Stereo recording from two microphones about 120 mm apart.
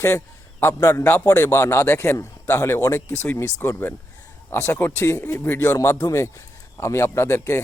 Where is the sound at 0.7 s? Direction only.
25° left (ahead or behind).